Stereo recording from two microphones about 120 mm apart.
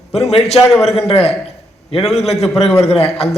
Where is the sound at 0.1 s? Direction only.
60° left (ahead or behind).